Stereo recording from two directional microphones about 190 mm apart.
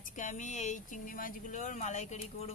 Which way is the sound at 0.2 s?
40° left (ahead or behind).